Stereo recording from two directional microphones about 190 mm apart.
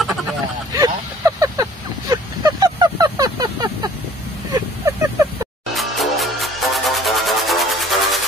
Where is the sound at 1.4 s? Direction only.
20° right (ahead or behind).